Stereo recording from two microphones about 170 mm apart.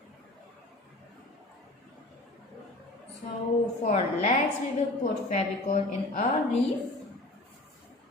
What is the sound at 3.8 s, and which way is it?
A woman's voice, 50° left (ahead or behind).